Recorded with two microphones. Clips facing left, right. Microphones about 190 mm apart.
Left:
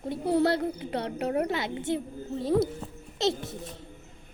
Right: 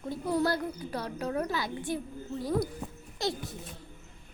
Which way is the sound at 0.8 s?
25° left (ahead or behind).